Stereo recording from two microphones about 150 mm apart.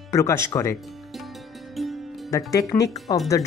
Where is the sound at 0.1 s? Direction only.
20° left (ahead or behind).